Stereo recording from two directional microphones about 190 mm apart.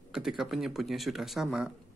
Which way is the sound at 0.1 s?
5° right (ahead or behind).